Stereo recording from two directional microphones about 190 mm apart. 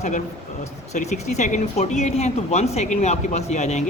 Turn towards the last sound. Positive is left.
turn(degrees=35)  # may be behind; listen again after turning